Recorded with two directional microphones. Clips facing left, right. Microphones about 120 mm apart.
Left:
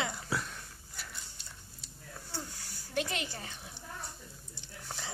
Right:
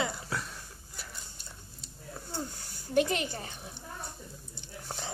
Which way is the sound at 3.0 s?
50° right (ahead or behind).